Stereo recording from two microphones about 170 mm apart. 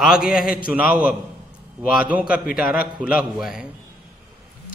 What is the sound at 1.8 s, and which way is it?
A man's voice, 5° right (ahead or behind).